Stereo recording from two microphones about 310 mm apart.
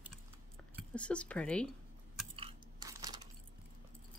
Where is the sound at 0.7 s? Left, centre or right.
Centre.